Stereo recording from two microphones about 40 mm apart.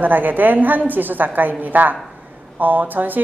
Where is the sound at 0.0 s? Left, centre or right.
Right.